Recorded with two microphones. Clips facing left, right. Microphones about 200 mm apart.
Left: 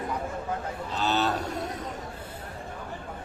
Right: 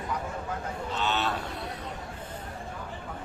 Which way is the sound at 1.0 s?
40° left (ahead or behind).